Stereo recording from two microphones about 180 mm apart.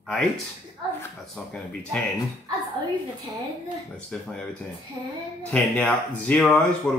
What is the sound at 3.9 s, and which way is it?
Mantra, 5° left (ahead or behind).